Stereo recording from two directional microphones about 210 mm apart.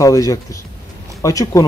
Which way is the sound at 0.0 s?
15° left (ahead or behind).